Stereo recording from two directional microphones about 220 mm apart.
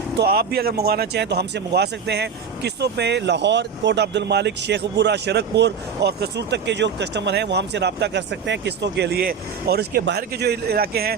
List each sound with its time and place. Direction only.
0.2 s speech: 45° right (ahead or behind)